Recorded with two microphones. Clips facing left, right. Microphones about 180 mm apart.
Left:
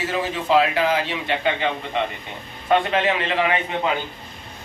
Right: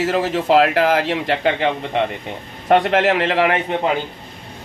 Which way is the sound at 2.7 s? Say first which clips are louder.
Right 5 dB; 75° right (ahead or behind).